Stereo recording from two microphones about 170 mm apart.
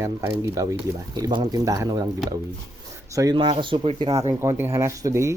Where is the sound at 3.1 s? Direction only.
20° right (ahead or behind).